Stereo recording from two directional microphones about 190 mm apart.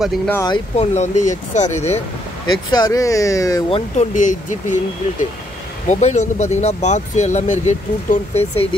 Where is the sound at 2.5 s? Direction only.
20° left (ahead or behind).